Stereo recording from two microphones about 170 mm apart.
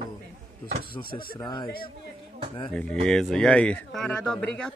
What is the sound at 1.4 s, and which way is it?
Speech, 25° left (ahead or behind).